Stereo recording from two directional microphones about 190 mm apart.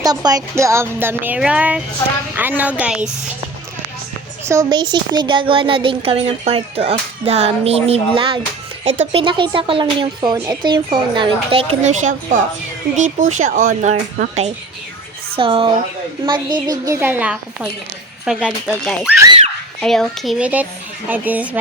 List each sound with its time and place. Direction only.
0.0 s speech: 20° right (ahead or behind)
4.4 s speech: 20° right (ahead or behind)